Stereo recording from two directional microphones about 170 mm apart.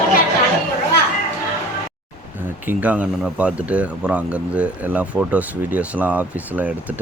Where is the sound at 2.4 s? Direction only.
10° right (ahead or behind).